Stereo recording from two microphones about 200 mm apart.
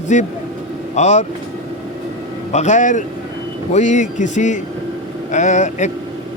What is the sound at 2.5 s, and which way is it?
A man's voice, 35° left (ahead or behind).